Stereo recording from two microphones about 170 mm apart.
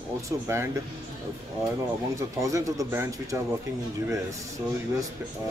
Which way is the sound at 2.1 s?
20° right (ahead or behind).